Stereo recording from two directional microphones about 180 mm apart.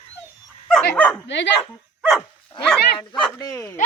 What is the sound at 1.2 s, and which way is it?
Speech, 75° left (ahead or behind).